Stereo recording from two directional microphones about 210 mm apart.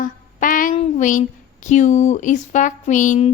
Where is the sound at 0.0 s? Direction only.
40° left (ahead or behind).